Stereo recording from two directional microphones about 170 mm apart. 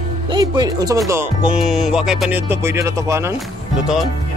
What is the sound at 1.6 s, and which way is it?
Speech, centre (ahead or behind).